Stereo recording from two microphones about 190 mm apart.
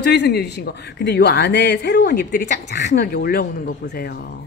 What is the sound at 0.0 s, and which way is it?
Speech, 60° left (ahead or behind).